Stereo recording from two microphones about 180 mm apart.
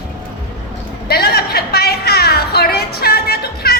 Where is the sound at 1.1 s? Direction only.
60° left (ahead or behind).